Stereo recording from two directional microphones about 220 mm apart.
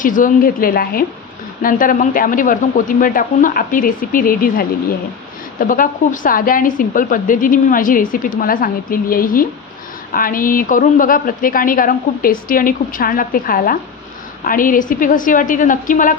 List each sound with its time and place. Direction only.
0.0 s a woman's voice: 40° left (ahead or behind)